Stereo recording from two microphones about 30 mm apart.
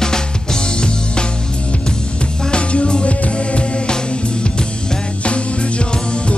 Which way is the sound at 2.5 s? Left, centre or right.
Left.